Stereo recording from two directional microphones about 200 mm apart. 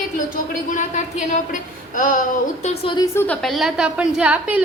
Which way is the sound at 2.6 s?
25° left (ahead or behind).